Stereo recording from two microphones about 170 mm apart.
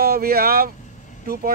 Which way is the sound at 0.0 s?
60° right (ahead or behind).